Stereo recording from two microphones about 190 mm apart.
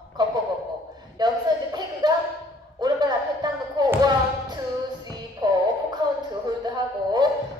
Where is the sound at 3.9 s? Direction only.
20° right (ahead or behind).